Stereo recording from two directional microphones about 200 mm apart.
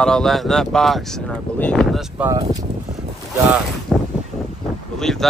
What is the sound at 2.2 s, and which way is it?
Speech, 15° right (ahead or behind).